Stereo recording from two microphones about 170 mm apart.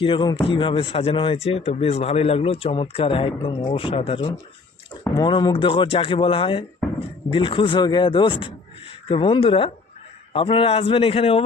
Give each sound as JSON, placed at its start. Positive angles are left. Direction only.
{"t": 0.0, "sound": "speech", "side_deg": 25}